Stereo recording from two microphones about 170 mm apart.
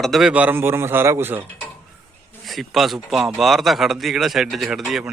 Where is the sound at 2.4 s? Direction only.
Centre (ahead or behind).